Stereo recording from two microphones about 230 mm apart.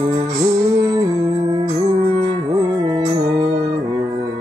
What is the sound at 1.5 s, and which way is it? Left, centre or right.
Music, centre.